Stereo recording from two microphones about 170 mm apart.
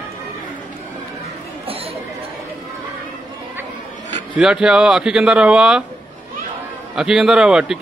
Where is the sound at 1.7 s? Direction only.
35° right (ahead or behind).